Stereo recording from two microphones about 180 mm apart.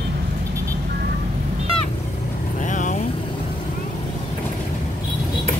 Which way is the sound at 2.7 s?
45° left (ahead or behind).